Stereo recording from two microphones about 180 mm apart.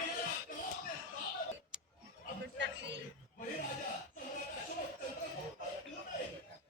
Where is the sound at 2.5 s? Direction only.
75° right (ahead or behind).